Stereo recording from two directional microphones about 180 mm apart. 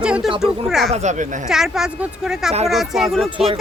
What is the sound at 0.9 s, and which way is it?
Speech, 40° right (ahead or behind).